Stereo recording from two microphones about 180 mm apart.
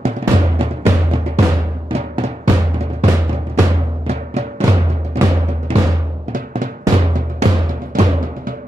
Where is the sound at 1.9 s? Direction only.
35° right (ahead or behind).